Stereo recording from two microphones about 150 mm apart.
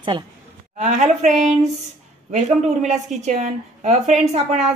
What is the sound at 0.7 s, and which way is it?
Speech, 55° right (ahead or behind).